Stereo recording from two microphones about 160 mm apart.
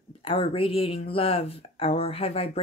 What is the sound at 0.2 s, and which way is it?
Speech, 35° left (ahead or behind).